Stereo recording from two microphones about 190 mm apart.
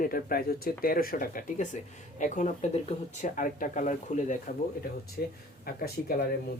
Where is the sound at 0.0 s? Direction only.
50° left (ahead or behind).